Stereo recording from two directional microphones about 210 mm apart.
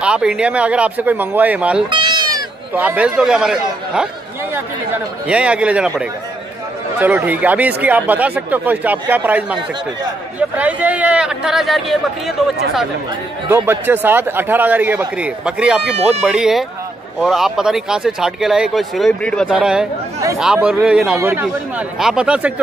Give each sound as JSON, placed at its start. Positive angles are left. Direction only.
{"t": 0.0, "sound": "speech", "side_deg": -5}
{"t": 1.9, "sound": "sheep", "side_deg": -20}
{"t": 2.7, "sound": "a man's voice", "side_deg": -10}
{"t": 13.5, "sound": "a man's voice", "side_deg": -10}